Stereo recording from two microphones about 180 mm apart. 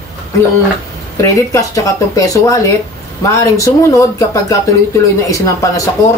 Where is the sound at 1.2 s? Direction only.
15° left (ahead or behind).